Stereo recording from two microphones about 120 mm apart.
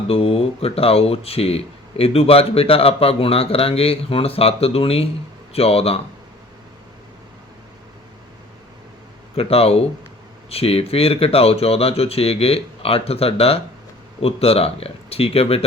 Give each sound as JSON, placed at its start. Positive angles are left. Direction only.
{"t": 0.1, "sound": "speech", "side_deg": 55}
{"t": 9.3, "sound": "speech", "side_deg": 55}